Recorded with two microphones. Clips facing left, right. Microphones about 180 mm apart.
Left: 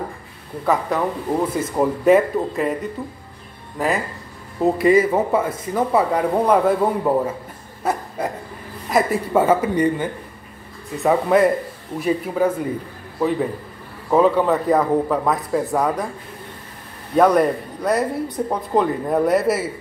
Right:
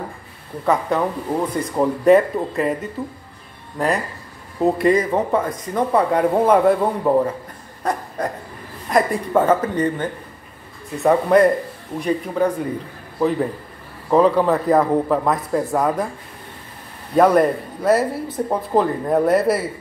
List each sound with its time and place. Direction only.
0.7 s speech: centre (ahead or behind)
7.8 s a sound: 5° left (ahead or behind)
8.9 s speech: 5° left (ahead or behind)
17.1 s speech: centre (ahead or behind)